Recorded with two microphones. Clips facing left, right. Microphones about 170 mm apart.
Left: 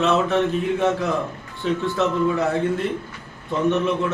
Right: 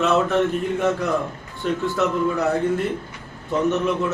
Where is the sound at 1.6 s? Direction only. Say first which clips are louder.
Even; centre (ahead or behind).